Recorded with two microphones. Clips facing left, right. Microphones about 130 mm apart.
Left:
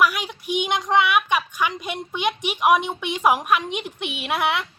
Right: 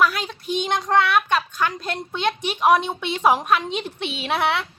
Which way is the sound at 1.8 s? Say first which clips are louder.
Right 1 dB; 10° left (ahead or behind).